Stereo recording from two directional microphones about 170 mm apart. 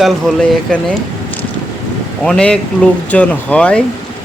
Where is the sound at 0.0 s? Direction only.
Centre (ahead or behind).